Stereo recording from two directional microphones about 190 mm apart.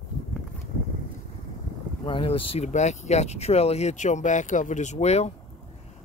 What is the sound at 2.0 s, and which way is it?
Speech, 25° left (ahead or behind).